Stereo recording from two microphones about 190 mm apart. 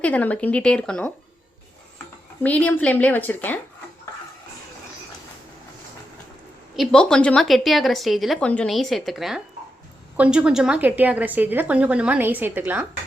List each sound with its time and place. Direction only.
0.0 s a woman's voice: 10° left (ahead or behind)
2.4 s a woman's voice: 5° left (ahead or behind)
6.7 s a woman's voice: 5° left (ahead or behind)